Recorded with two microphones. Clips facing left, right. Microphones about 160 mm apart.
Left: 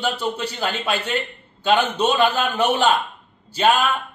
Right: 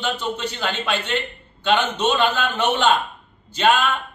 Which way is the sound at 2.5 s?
10° left (ahead or behind).